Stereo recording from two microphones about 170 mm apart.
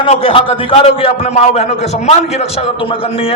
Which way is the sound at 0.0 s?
35° left (ahead or behind).